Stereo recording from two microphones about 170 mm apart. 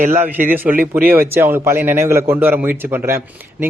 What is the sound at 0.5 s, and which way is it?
Speech, 10° right (ahead or behind).